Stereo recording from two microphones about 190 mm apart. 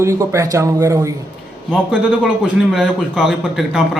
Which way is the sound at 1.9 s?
Centre (ahead or behind).